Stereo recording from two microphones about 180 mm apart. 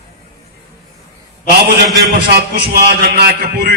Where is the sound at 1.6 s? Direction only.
60° right (ahead or behind).